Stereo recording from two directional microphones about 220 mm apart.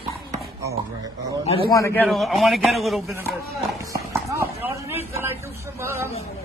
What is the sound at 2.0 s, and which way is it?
A man's voice, centre (ahead or behind).